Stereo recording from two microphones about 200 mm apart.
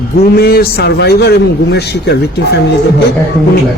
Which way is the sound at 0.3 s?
50° left (ahead or behind).